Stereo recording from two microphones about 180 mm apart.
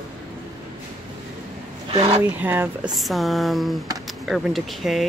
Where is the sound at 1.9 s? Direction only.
35° right (ahead or behind).